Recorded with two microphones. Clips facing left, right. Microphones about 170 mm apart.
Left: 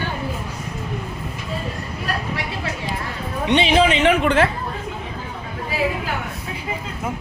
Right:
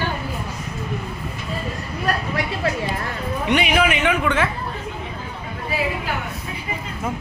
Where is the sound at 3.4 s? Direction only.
25° left (ahead or behind).